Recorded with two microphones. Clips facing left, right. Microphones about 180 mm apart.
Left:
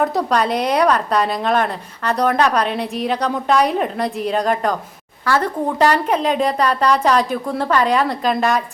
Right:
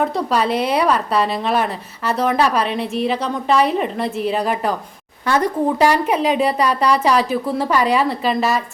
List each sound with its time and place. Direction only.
0.0 s a woman's voice: centre (ahead or behind)
5.2 s speech: 20° right (ahead or behind); by 8.6 s centre (ahead or behind)